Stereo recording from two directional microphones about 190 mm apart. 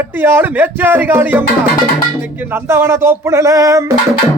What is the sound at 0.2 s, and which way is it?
Music, 10° right (ahead or behind).